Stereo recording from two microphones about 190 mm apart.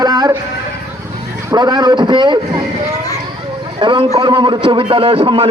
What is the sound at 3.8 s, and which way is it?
A man's voice, 25° right (ahead or behind).